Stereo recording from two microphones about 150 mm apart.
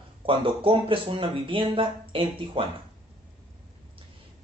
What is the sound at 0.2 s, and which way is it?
Speech, 35° right (ahead or behind).